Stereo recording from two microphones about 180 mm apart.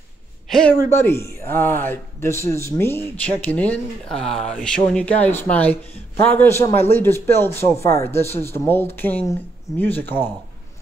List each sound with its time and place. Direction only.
0.5 s speech: 5° left (ahead or behind)